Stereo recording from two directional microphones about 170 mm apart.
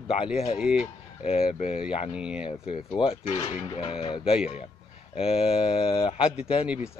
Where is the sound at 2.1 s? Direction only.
5° right (ahead or behind).